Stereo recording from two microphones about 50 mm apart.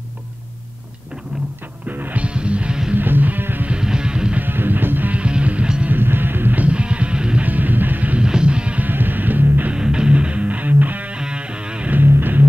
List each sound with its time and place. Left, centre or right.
1.9 s music: right
2.2 s music: right
2.9 s music: right
3.8 s music: centre
4.4 s music: right
5.1 s music: right
5.9 s music: right
6.6 s music: right
7.4 s music: right
8.2 s music: centre
8.8 s music: right
9.7 s music: centre; by 11.1 s right
11.1 s music: centre
11.9 s music: right